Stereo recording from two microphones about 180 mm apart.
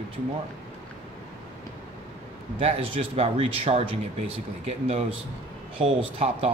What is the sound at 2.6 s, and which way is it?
Speech, 30° right (ahead or behind).